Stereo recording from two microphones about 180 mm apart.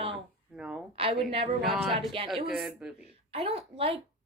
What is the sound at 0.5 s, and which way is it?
Speech, 5° right (ahead or behind).